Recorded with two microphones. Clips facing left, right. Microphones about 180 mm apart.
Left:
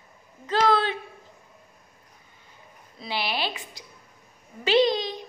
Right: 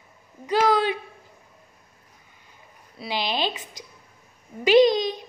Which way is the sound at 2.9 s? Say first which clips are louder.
Right 3 dB; 15° right (ahead or behind).